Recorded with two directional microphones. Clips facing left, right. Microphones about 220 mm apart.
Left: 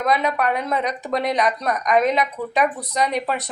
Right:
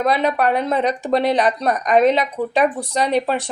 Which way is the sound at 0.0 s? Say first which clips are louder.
Right 3 dB; 30° right (ahead or behind).